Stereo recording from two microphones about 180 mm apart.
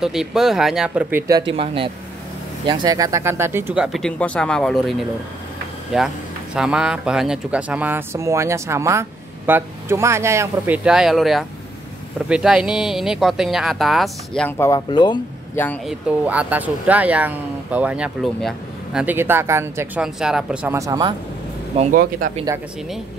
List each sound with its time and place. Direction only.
0.0 s speech: centre (ahead or behind)
1.5 s speech: 30° right (ahead or behind); by 14.5 s centre (ahead or behind)
14.6 s speech: 20° left (ahead or behind)
15.5 s speech: 10° left (ahead or behind)
15.9 s speech: 5° right (ahead or behind)
20.2 s speech: 5° right (ahead or behind)
20.7 s speech: 20° right (ahead or behind)
21.9 s speech: 50° right (ahead or behind)